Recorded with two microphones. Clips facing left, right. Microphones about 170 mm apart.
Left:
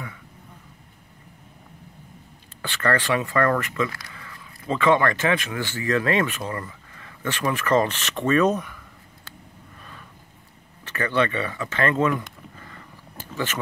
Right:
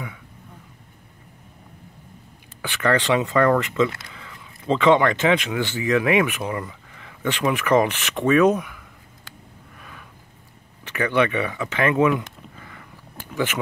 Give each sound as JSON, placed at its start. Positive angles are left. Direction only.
{"t": 2.6, "sound": "speech", "side_deg": -15}
{"t": 10.9, "sound": "speech", "side_deg": -15}